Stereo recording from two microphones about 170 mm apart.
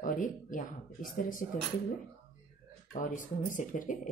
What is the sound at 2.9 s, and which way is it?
Speech, 50° left (ahead or behind).